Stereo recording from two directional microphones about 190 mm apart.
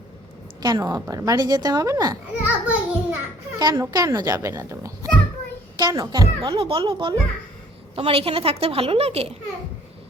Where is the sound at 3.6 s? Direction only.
20° right (ahead or behind).